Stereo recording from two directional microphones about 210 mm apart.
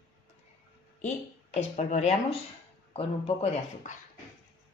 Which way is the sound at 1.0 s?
30° left (ahead or behind).